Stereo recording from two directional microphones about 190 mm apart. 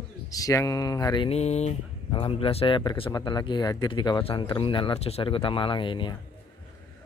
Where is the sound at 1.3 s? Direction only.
35° left (ahead or behind).